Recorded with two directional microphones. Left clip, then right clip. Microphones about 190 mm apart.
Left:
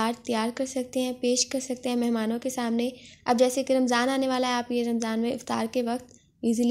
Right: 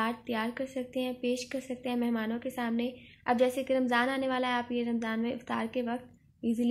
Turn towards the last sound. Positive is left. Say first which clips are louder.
# left 6 dB
turn(degrees=40)  # may be behind; listen again after turning